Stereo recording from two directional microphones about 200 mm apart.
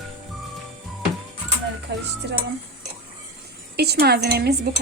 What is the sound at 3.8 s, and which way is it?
Speech, 55° right (ahead or behind).